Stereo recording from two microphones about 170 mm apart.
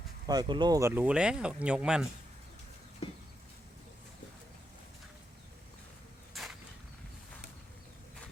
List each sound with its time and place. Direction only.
0.3 s speech: 25° right (ahead or behind); by 2.0 s 5° right (ahead or behind)
6.3 s creak: centre (ahead or behind)